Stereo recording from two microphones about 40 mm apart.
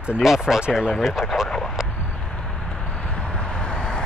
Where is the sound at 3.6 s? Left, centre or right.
Left.